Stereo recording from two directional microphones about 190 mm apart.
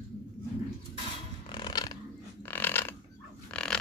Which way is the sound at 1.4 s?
25° left (ahead or behind).